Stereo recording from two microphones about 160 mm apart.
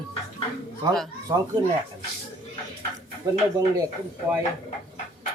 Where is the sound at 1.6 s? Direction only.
25° right (ahead or behind).